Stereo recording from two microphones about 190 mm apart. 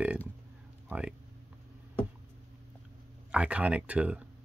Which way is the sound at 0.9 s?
10° right (ahead or behind).